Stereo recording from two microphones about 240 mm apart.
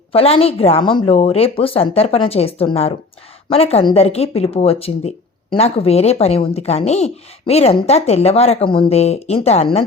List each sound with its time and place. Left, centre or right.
0.1 s speech: left